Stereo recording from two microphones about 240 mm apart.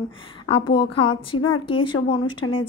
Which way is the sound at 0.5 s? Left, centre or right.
Left.